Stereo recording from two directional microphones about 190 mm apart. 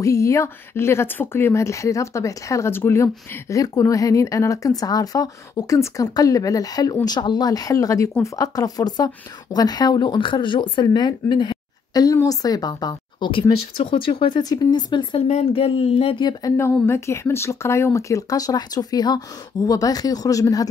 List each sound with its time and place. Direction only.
0.0 s a woman's voice: 15° left (ahead or behind)